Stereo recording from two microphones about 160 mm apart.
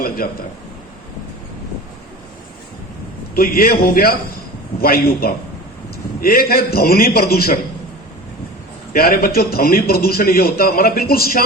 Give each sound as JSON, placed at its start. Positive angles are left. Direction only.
{"t": 3.3, "sound": "a man's voice", "side_deg": 65}
{"t": 8.9, "sound": "a man's voice", "side_deg": 70}